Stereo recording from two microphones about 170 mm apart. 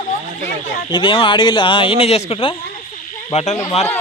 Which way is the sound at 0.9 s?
30° left (ahead or behind).